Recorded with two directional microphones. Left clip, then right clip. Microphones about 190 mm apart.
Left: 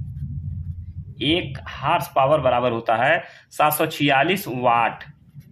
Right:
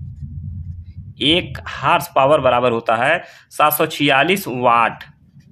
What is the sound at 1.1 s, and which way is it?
Speech, 35° right (ahead or behind).